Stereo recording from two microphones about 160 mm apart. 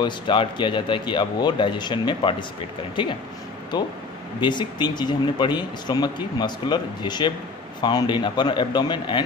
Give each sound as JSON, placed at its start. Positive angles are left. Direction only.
{"t": 0.0, "sound": "speech", "side_deg": 30}
{"t": 3.7, "sound": "speech", "side_deg": 25}